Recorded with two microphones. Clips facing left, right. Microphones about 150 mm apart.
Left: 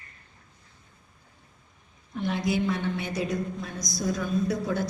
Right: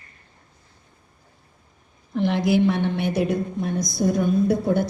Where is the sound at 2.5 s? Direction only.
60° right (ahead or behind).